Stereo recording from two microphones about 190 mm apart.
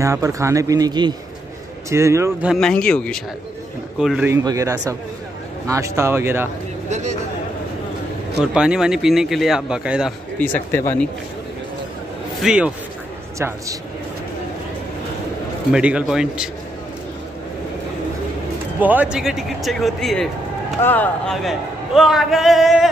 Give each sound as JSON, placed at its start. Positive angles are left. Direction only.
{"t": 0.0, "sound": "speech", "side_deg": -15}
{"t": 2.5, "sound": "a man's voice", "side_deg": 5}
{"t": 4.3, "sound": "speech", "side_deg": -15}
{"t": 6.9, "sound": "a man's voice", "side_deg": -35}
{"t": 8.5, "sound": "a man's voice", "side_deg": -5}
{"t": 10.4, "sound": "speech", "side_deg": 10}
{"t": 12.4, "sound": "a man's voice", "side_deg": -5}
{"t": 15.7, "sound": "a man's voice", "side_deg": -5}
{"t": 18.8, "sound": "a man's voice", "side_deg": -10}